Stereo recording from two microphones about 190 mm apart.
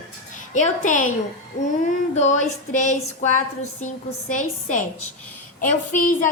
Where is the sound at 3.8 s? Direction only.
40° left (ahead or behind).